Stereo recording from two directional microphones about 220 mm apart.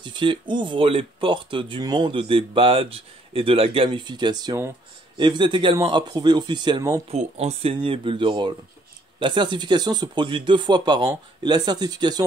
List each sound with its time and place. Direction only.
0.0 s speech: 20° right (ahead or behind)
7.1 s speech: 30° right (ahead or behind)